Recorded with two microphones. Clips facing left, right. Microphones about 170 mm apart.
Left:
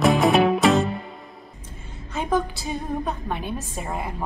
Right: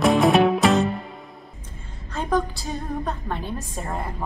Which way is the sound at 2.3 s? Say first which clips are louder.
Even; 10° left (ahead or behind).